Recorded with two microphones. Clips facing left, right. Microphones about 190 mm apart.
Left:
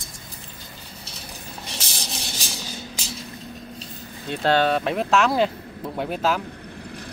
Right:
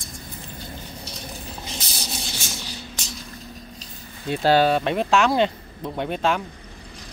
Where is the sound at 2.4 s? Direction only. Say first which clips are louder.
Even; 35° left (ahead or behind).